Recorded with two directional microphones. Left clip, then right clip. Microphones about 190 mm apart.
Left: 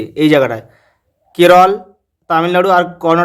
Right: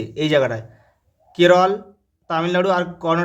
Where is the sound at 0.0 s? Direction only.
30° left (ahead or behind).